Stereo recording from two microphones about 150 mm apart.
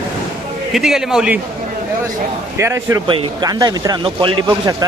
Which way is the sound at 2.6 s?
20° right (ahead or behind).